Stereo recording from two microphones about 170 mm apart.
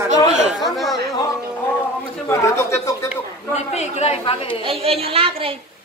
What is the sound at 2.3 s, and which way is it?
Speech, 15° left (ahead or behind).